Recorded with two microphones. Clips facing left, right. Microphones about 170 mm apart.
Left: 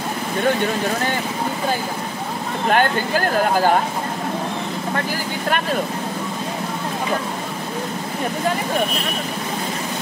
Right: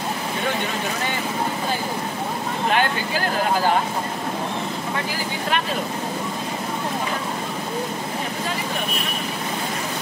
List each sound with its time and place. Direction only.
2.7 s speech: 45° left (ahead or behind)